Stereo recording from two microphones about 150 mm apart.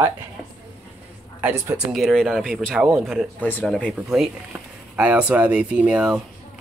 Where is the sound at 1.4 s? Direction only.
10° right (ahead or behind).